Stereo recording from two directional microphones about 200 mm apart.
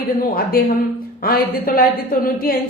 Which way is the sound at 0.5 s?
45° left (ahead or behind).